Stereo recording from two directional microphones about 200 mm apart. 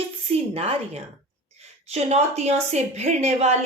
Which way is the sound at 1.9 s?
35° right (ahead or behind).